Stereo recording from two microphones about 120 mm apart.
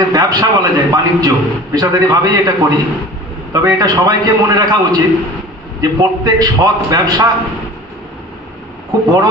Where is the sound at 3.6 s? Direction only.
30° right (ahead or behind).